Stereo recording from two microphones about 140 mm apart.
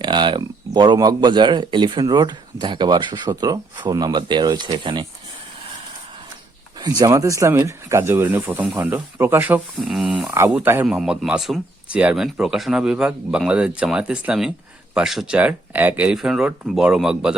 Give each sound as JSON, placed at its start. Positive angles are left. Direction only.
{"t": 0.0, "sound": "speech", "side_deg": -35}
{"t": 6.7, "sound": "speech", "side_deg": -30}
{"t": 9.8, "sound": "speech", "side_deg": -5}
{"t": 10.3, "sound": "speech", "side_deg": -15}